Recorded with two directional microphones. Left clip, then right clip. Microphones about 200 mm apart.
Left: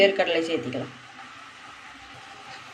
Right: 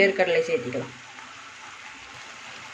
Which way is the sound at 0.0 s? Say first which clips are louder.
Even; 25° right (ahead or behind).